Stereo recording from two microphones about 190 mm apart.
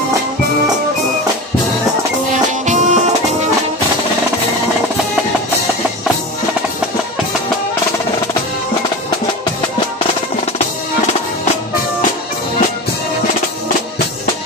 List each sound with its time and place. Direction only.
2.6 s music: 40° right (ahead or behind)